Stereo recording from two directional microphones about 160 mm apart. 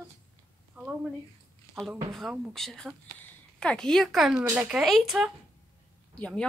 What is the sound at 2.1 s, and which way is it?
A woman's voice, centre (ahead or behind).